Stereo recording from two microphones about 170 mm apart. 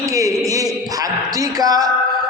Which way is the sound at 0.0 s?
20° right (ahead or behind).